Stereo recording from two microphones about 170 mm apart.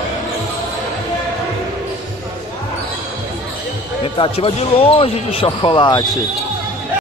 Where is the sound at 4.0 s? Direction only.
35° left (ahead or behind).